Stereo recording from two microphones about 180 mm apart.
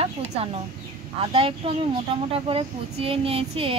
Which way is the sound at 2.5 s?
30° right (ahead or behind).